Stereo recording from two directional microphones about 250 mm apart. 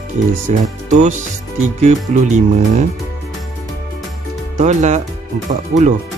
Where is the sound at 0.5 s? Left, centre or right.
Right.